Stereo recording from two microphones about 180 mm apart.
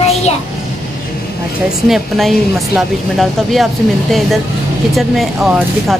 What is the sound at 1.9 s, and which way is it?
Speech, centre (ahead or behind).